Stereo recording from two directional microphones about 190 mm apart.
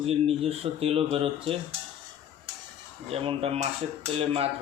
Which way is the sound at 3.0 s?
30° right (ahead or behind).